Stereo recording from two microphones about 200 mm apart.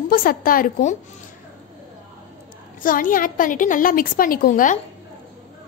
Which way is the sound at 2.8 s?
45° left (ahead or behind).